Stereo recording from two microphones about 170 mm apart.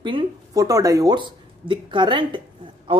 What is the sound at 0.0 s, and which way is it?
Speech, 25° right (ahead or behind).